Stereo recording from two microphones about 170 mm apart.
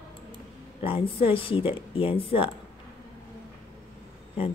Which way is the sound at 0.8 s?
35° left (ahead or behind).